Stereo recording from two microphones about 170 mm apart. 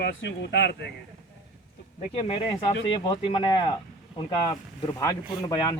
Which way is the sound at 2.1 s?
35° left (ahead or behind).